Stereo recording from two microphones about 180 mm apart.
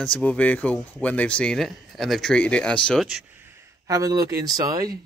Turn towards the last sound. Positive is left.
turn(degrees=-20)  # may be behind; listen again after turning